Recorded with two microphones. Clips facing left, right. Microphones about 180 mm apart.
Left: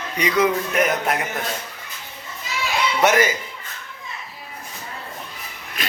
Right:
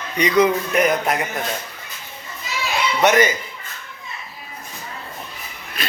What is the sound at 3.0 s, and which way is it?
Speech, 5° left (ahead or behind).